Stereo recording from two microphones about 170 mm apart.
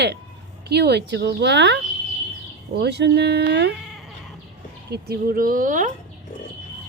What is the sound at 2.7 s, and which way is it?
Speech, 80° right.